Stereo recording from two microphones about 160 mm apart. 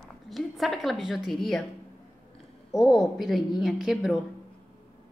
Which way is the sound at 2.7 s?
Centre (ahead or behind).